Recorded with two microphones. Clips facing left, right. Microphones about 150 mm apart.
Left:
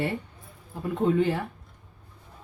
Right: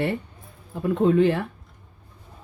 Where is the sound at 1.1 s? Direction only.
75° right (ahead or behind).